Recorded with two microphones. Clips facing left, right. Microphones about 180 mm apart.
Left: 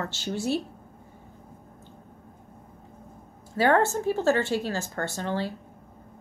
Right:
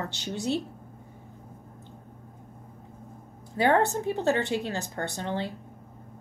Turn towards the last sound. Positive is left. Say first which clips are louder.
# left 2 dB
turn(degrees=-20)  # may be behind; listen again after turning